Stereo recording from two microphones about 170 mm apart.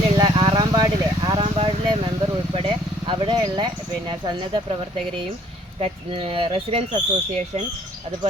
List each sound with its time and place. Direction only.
0.2 s vehicle: 25° right (ahead or behind)
5.8 s speech: 30° right (ahead or behind)